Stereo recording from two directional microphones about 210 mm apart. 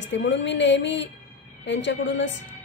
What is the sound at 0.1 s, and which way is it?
A woman's voice, 60° left (ahead or behind).